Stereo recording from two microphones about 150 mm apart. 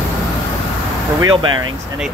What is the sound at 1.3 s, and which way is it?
Speech, 30° right (ahead or behind).